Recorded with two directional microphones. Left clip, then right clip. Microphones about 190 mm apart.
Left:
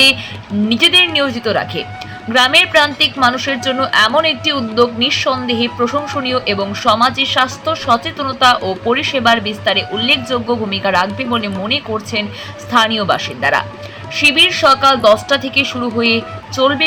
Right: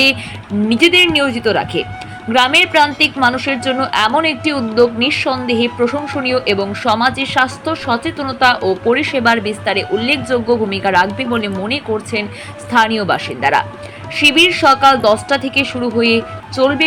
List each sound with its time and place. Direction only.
0.7 s a woman's voice: 10° right (ahead or behind)